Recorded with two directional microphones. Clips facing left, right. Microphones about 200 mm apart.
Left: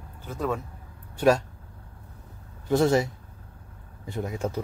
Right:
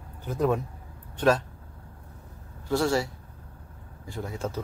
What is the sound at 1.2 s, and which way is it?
Speech, 10° left (ahead or behind).